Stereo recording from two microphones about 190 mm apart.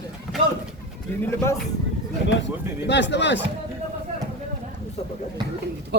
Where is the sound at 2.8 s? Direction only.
65° left (ahead or behind).